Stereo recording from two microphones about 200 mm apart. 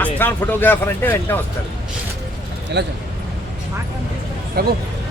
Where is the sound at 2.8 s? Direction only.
60° right (ahead or behind).